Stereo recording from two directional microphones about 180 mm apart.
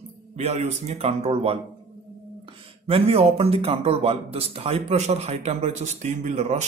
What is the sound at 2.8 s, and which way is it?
Speech, 30° right (ahead or behind).